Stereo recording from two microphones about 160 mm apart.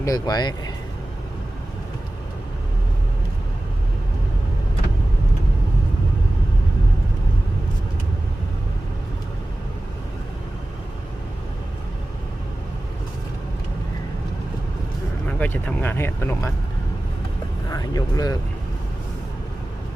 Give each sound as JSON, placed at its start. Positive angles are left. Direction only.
{"t": 0.0, "sound": "speech", "side_deg": 25}
{"t": 15.3, "sound": "speech", "side_deg": 10}
{"t": 17.7, "sound": "speech", "side_deg": 25}